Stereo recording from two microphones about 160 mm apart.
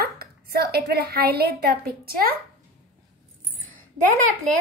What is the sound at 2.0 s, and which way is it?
Speech, 65° right (ahead or behind).